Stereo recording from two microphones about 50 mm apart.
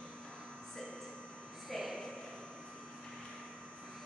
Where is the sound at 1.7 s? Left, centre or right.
Centre.